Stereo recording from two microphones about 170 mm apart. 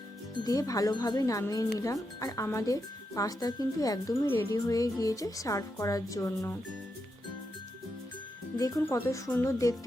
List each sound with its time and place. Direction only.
0.4 s speech: 20° left (ahead or behind)
8.5 s speech: 20° left (ahead or behind)